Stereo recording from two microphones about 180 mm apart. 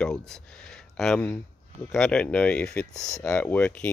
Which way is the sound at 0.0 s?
5° left (ahead or behind).